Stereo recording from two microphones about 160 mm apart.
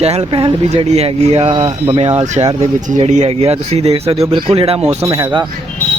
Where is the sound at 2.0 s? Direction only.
40° right (ahead or behind).